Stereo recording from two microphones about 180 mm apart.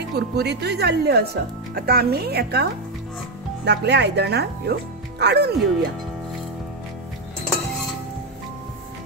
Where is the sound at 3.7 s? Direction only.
70° right (ahead or behind).